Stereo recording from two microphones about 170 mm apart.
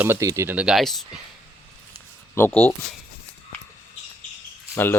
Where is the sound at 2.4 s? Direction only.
15° left (ahead or behind).